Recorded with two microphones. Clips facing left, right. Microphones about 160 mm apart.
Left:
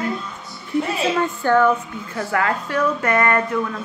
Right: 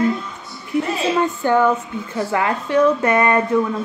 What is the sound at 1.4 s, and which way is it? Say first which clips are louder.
Speech: left 1 dB; 15° right (ahead or behind).